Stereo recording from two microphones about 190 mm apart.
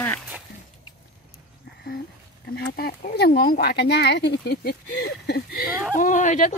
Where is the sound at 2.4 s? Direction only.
55° left (ahead or behind).